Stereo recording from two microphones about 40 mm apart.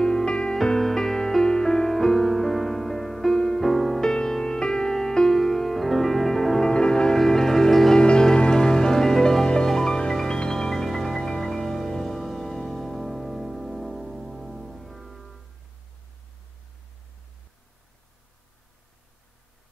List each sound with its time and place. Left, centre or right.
0.0 s music: centre
0.6 s music: centre
4.0 s music: centre
6.7 s music: left
7.9 s music: centre